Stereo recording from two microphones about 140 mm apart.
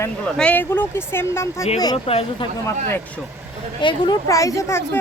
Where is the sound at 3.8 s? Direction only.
30° left (ahead or behind).